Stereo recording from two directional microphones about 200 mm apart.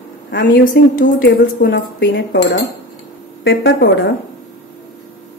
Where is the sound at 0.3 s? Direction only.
60° left (ahead or behind).